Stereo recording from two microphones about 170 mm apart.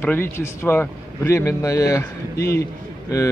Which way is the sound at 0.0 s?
10° left (ahead or behind).